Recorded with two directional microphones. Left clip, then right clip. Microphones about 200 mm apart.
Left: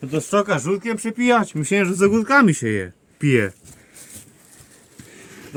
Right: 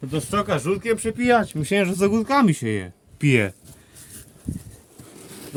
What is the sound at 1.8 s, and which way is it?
Speech, 10° right (ahead or behind).